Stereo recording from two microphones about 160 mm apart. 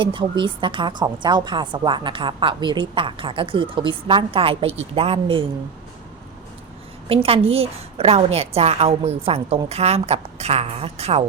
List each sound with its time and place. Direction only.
0.0 s a woman's voice: 30° right (ahead or behind)
7.1 s a woman's voice: 35° right (ahead or behind)